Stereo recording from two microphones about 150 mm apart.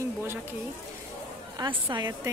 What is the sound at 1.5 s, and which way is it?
Speech, 30° right (ahead or behind).